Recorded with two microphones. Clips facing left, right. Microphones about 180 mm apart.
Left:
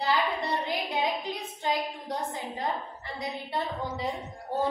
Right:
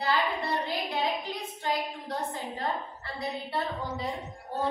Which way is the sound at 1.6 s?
20° left (ahead or behind).